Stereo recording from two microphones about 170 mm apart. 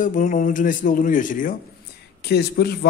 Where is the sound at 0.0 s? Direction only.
50° left (ahead or behind).